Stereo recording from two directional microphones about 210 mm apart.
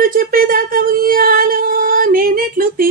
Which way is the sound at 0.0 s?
40° right (ahead or behind).